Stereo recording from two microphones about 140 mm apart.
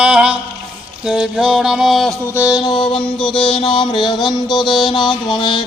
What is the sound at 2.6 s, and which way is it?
Mantra, 35° left (ahead or behind).